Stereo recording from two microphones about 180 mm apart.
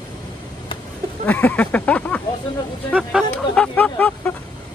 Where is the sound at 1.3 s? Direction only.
10° left (ahead or behind).